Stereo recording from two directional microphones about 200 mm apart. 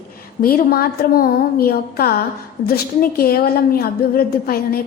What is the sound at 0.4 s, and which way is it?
A woman's voice, 50° left (ahead or behind).